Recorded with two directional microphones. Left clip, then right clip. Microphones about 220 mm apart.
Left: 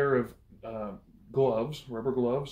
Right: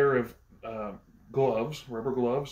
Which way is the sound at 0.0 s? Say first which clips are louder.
Right 2 dB; centre (ahead or behind).